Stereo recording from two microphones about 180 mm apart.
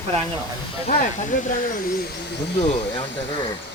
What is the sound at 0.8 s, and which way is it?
Speech, 45° left (ahead or behind).